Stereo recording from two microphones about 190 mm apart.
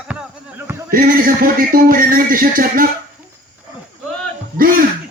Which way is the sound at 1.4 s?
50° right (ahead or behind).